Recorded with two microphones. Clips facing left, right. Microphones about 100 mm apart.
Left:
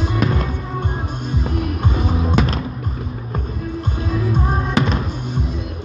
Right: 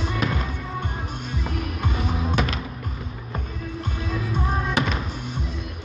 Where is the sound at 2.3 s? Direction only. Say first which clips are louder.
Left 6 dB; 35° left (ahead or behind).